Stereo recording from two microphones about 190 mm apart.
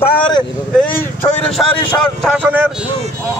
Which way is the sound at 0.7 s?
10° left (ahead or behind).